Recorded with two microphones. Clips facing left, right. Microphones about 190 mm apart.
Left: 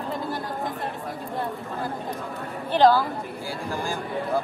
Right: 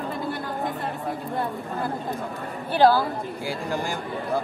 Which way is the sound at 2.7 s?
5° right (ahead or behind).